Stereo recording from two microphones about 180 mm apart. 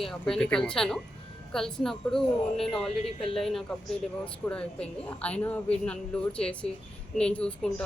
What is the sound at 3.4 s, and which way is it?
A woman's voice, centre (ahead or behind).